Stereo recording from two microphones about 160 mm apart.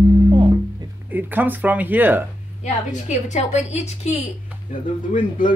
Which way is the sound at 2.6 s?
50° left (ahead or behind).